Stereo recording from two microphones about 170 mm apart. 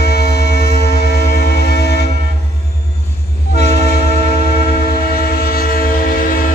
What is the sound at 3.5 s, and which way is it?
Train, 70° left (ahead or behind).